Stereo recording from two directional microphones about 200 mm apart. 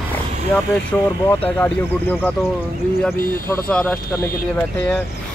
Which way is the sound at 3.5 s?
5° left (ahead or behind).